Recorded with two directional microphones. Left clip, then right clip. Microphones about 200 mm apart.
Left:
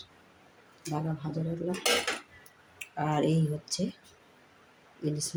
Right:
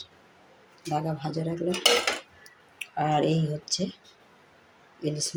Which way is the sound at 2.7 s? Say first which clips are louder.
Right 5 dB; 10° right (ahead or behind).